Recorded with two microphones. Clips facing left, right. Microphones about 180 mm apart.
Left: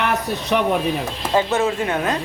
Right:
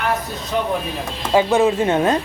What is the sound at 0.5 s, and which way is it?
Speech, 70° left (ahead or behind).